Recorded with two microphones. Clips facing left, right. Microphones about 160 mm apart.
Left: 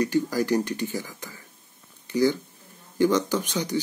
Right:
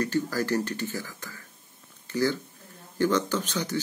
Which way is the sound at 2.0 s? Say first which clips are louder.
Left 4 dB; 15° left (ahead or behind).